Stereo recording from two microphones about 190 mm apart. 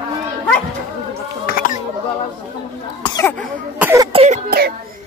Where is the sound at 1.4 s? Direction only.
50° left (ahead or behind).